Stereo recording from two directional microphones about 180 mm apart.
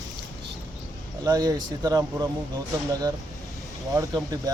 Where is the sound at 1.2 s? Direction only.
20° right (ahead or behind).